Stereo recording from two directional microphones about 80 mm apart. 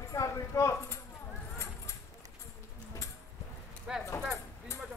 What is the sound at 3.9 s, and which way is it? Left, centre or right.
Clip-clop, centre.